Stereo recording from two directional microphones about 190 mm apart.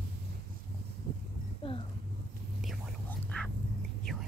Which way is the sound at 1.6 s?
30° left (ahead or behind).